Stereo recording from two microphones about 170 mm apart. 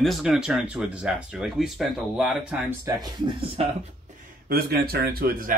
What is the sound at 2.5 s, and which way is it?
Speech, 10° right (ahead or behind).